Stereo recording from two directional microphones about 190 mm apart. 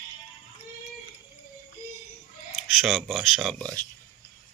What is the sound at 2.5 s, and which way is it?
Speech, centre (ahead or behind).